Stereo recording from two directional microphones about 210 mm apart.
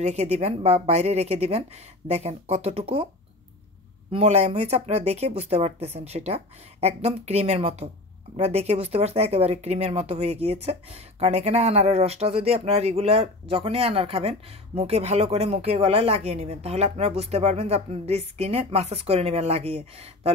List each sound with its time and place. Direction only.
0.0 s speech: 30° right (ahead or behind)
4.1 s speech: 30° right (ahead or behind)